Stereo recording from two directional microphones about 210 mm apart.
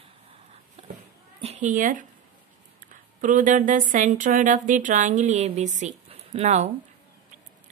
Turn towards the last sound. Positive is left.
turn(degrees=-30)  # may be behind; listen again after turning